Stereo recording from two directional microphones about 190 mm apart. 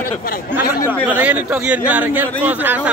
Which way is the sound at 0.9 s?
10° right (ahead or behind).